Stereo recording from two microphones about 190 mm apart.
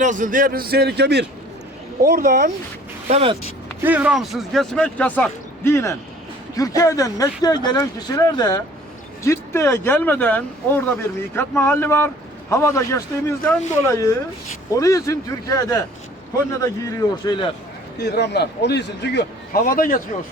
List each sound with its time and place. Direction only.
0.0 s a man's voice: 40° right (ahead or behind); by 1.3 s 60° right (ahead or behind)
2.0 s speech: 50° right (ahead or behind)
3.1 s speech: 30° right (ahead or behind)
3.8 s speech: 10° right (ahead or behind); by 15.8 s 20° left (ahead or behind)
16.8 s speech: 25° left (ahead or behind)
18.0 s a man's voice: 60° left (ahead or behind); by 20.0 s 45° left (ahead or behind)